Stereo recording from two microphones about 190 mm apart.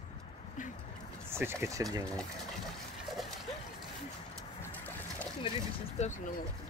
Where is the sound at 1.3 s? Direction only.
15° right (ahead or behind).